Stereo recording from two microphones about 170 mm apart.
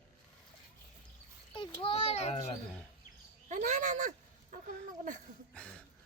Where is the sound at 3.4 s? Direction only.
45° right (ahead or behind).